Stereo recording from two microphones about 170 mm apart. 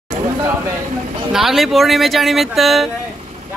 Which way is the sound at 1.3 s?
Centre (ahead or behind).